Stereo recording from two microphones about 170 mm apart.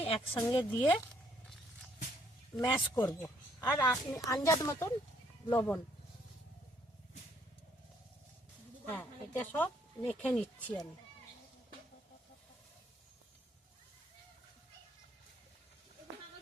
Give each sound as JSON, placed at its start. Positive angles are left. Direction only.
{"t": 0.0, "sound": "speech", "side_deg": 30}
{"t": 0.8, "sound": "a sound", "side_deg": 10}
{"t": 2.6, "sound": "a woman's voice", "side_deg": 25}
{"t": 8.9, "sound": "a woman's voice", "side_deg": 10}